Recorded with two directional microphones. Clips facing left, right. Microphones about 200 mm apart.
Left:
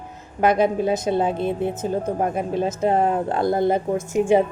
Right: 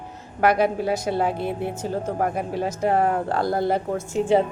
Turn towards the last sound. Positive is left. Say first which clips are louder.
# left 2 dB
turn(degrees=15)  # may be behind; listen again after turning